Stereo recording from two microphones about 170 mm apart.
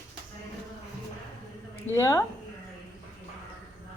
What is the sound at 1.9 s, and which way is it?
Speech, 15° left (ahead or behind).